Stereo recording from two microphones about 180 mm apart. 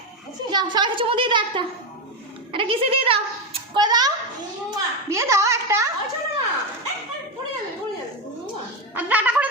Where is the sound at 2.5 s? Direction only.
30° right (ahead or behind).